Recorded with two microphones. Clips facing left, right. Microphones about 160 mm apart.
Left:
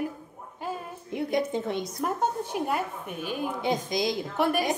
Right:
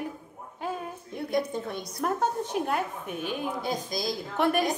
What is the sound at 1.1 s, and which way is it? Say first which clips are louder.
Speech: left 2 dB; 20° left (ahead or behind).